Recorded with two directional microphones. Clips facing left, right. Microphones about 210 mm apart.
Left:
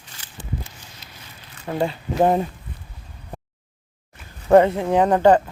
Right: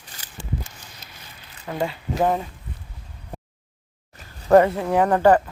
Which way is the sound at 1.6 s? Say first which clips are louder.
Left 3 dB; 30° left (ahead or behind).